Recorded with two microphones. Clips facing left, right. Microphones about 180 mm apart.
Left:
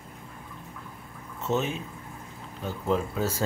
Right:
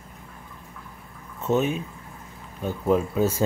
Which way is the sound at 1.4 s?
15° right (ahead or behind).